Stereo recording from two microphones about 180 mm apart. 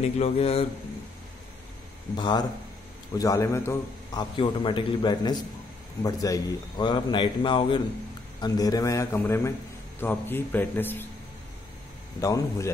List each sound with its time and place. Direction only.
0.0 s speech: 35° left (ahead or behind)
2.1 s a man's voice: 25° left (ahead or behind)
12.2 s a man's voice: 15° left (ahead or behind)